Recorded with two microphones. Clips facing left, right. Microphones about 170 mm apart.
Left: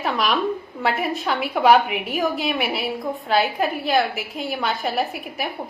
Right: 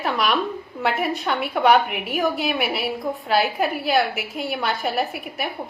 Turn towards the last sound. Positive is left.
turn(degrees=0)  # may be behind; listen again after turning